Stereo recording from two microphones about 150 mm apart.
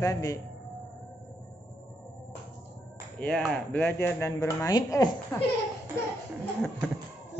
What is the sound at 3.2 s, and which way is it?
Speech, 5° left (ahead or behind).